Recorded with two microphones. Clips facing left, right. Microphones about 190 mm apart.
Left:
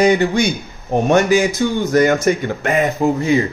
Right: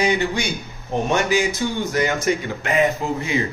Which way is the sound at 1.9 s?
50° left (ahead or behind).